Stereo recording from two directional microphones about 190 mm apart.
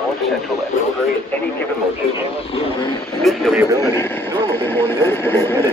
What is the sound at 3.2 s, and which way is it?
Speech, centre (ahead or behind).